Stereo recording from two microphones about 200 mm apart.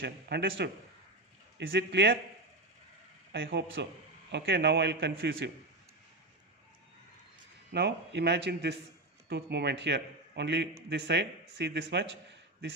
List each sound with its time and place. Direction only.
0.0 s a man's voice: 55° right (ahead or behind)
3.3 s a man's voice: 50° right (ahead or behind); by 5.5 s 70° right (ahead or behind)
7.7 s a man's voice: 55° right (ahead or behind)